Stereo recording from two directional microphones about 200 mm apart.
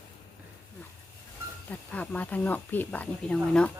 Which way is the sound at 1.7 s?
10° left (ahead or behind).